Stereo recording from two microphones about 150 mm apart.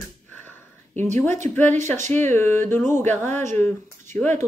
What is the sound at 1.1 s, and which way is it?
Speech, 15° left (ahead or behind).